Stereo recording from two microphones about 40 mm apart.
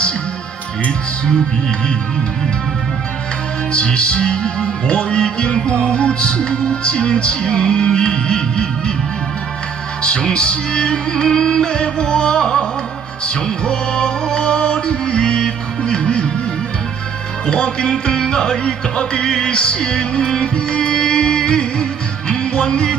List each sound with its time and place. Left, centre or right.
3.7 s music: left
10.0 s music: left
13.7 s music: left
17.5 s music: left